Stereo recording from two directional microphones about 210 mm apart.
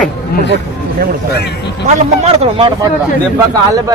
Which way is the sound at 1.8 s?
30° right (ahead or behind).